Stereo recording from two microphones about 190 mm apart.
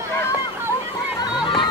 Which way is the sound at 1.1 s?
25° left (ahead or behind).